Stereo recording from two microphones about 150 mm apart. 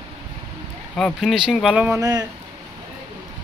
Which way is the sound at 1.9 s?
25° right (ahead or behind).